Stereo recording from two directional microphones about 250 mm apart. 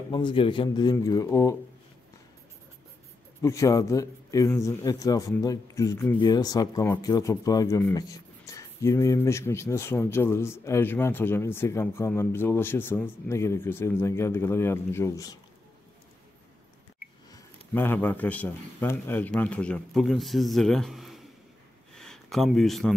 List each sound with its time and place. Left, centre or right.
0.1 s speech: centre
3.4 s speech: centre
17.3 s a man's voice: centre
21.9 s a sound: centre